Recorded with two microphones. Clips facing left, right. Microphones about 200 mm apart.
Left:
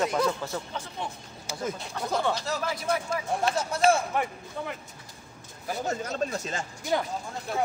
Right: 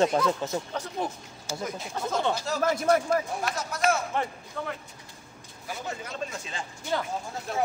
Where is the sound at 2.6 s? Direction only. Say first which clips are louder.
Right 6 dB; 50° right (ahead or behind).